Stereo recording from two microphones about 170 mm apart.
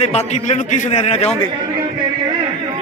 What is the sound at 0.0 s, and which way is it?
A man's voice, 40° left (ahead or behind).